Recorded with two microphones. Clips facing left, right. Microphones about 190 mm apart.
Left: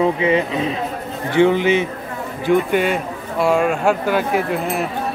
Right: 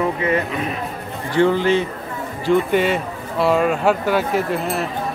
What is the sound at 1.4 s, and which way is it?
Speech, 20° left (ahead or behind).